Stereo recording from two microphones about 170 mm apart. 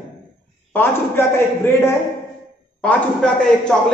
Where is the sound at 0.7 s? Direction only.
15° left (ahead or behind).